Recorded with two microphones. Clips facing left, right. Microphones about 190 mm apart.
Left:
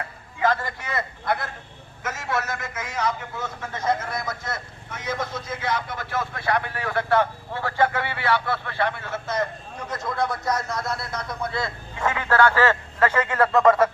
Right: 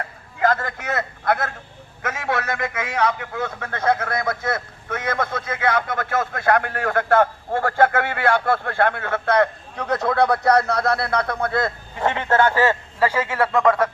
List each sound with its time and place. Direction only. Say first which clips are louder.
2.0 s a man's voice: right 3 dB; 65° right (ahead or behind)
11.9 s speech: right 2 dB; 30° right (ahead or behind); by 13.9 s 5° left (ahead or behind)